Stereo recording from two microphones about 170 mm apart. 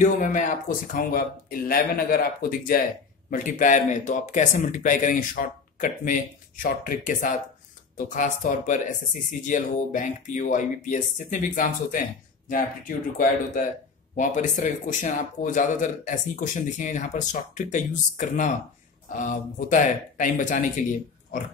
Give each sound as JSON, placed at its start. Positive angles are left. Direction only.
{"t": 0.0, "sound": "speech", "side_deg": 50}